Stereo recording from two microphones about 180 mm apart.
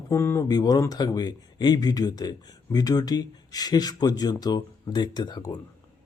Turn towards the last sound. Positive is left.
turn(degrees=20)  # may be behind; listen again after turning